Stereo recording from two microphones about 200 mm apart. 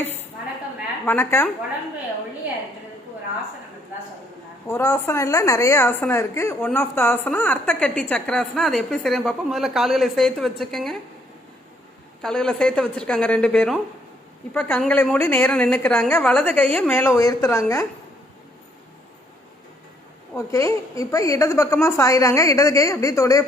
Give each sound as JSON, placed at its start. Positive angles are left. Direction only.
{"t": 1.0, "sound": "a woman's voice", "side_deg": 10}
{"t": 4.7, "sound": "a woman's voice", "side_deg": 15}
{"t": 12.2, "sound": "a woman's voice", "side_deg": 5}
{"t": 20.3, "sound": "a woman's voice", "side_deg": 15}